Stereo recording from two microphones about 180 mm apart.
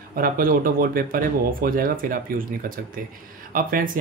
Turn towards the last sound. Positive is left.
turn(degrees=-50)  # may be behind; listen again after turning